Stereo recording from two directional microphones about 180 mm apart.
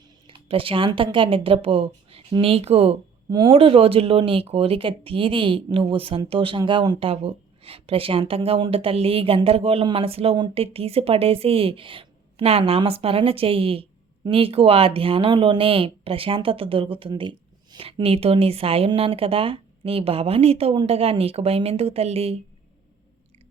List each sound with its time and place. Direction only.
0.3 s speech: 30° right (ahead or behind)